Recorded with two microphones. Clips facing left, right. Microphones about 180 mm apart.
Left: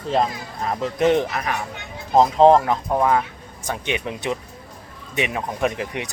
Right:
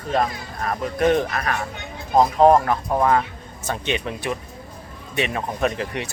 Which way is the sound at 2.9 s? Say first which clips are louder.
Even; 5° left (ahead or behind).